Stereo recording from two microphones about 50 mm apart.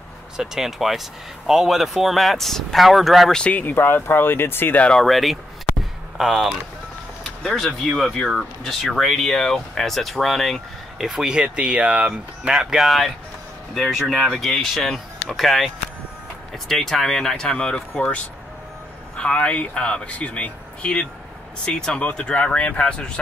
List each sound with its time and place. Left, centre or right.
0.4 s speech: centre
3.5 s speech: left
4.9 s speech: centre
7.8 s speech: centre
11.1 s speech: centre; by 23.1 s left